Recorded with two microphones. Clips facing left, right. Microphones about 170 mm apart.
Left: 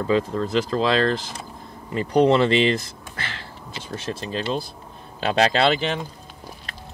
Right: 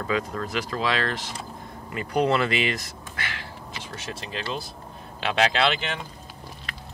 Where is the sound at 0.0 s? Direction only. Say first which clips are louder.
Left 6 dB; 25° left (ahead or behind).